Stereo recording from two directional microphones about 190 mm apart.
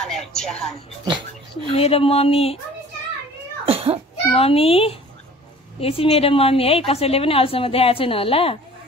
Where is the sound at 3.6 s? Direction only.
30° right (ahead or behind).